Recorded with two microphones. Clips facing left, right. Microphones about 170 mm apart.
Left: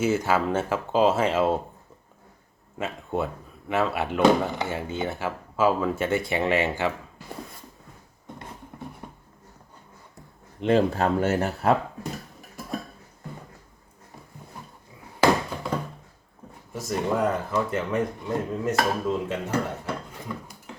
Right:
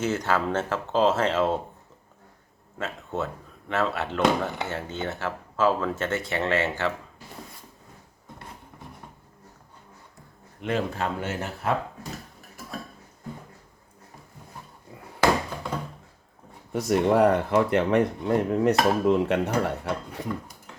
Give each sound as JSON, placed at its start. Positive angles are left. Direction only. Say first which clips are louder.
{"t": 0.0, "sound": "speech", "louder": "left 2 dB", "side_deg": 10}
{"t": 2.7, "sound": "speech", "louder": "left 2 dB", "side_deg": 10}
{"t": 10.6, "sound": "speech", "louder": "left 6 dB", "side_deg": 30}
{"t": 16.7, "sound": "speech", "louder": "right 5 dB", "side_deg": -70}